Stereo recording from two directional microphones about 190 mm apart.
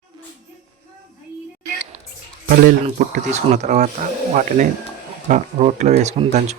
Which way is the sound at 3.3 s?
35° right (ahead or behind).